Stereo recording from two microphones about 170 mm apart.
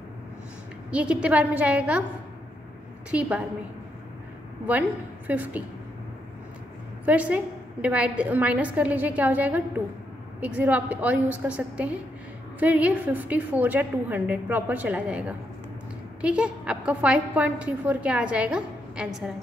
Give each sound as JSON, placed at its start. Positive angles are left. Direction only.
{"t": 0.8, "sound": "a woman's voice", "side_deg": -5}
{"t": 3.1, "sound": "a woman's voice", "side_deg": -5}
{"t": 4.6, "sound": "a woman's voice", "side_deg": -10}
{"t": 7.1, "sound": "a woman's voice", "side_deg": -10}